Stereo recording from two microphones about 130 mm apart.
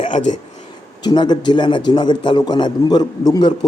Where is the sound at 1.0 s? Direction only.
35° left (ahead or behind).